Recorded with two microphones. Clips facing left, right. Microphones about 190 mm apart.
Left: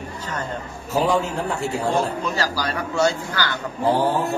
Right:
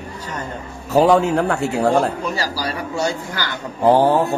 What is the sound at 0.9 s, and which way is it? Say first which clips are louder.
A man's voice: right 7 dB; 65° right (ahead or behind).